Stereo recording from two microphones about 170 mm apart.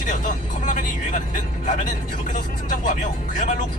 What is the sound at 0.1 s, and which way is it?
Speech, 50° left (ahead or behind).